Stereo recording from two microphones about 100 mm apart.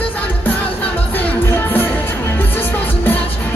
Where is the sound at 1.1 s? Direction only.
20° left (ahead or behind).